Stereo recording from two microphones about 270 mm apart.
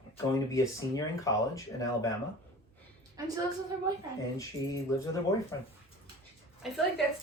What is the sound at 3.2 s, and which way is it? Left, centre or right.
Speech, centre.